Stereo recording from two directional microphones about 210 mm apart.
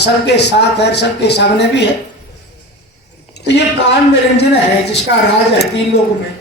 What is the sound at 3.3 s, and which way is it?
Speech, 55° left (ahead or behind).